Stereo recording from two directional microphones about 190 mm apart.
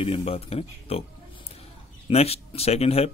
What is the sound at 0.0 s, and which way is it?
A man's voice, 30° left (ahead or behind).